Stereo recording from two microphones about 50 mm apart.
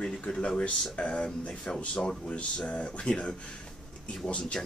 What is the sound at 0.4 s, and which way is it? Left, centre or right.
Speech, centre.